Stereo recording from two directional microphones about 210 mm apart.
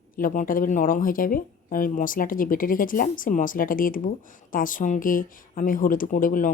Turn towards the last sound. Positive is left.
turn(degrees=40)  # may be behind; listen again after turning